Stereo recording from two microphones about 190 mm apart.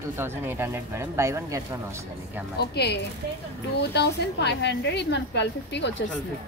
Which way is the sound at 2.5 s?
55° left (ahead or behind).